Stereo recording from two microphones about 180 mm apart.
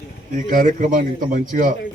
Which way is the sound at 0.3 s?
45° right (ahead or behind).